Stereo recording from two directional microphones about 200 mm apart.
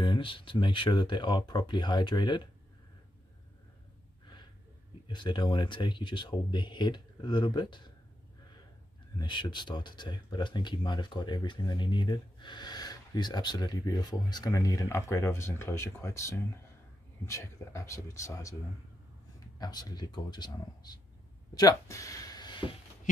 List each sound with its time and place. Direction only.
0.0 s speech: 25° left (ahead or behind)
5.0 s speech: 25° left (ahead or behind)
9.2 s a man's voice: 20° left (ahead or behind)
19.6 s speech: 20° left (ahead or behind)